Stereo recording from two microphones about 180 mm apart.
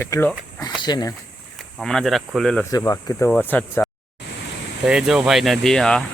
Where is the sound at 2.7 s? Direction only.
20° left (ahead or behind).